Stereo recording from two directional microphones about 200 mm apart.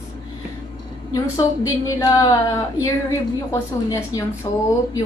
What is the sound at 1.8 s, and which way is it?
A woman's voice, 15° left (ahead or behind).